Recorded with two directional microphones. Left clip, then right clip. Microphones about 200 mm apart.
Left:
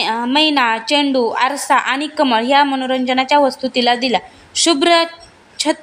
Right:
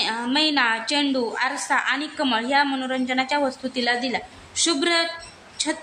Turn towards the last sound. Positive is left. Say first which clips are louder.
# left 9 dB
turn(degrees=35)  # may be behind; listen again after turning